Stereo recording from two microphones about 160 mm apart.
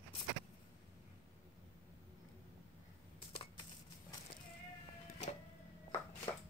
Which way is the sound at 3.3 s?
35° left (ahead or behind).